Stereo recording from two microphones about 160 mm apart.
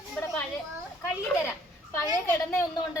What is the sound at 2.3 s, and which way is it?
Speech, 15° left (ahead or behind).